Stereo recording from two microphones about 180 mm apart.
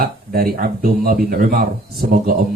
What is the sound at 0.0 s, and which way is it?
Speech, 55° right (ahead or behind).